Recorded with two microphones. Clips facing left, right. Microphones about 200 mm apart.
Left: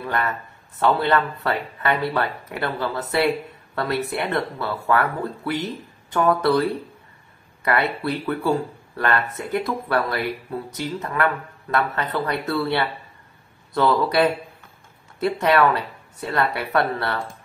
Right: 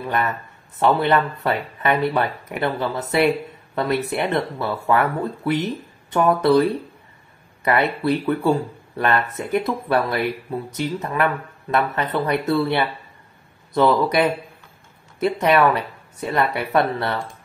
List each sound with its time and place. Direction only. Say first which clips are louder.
0.0 s speech: right 2 dB; 20° right (ahead or behind)